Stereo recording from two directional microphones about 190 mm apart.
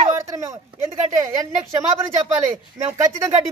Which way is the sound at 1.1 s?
15° right (ahead or behind).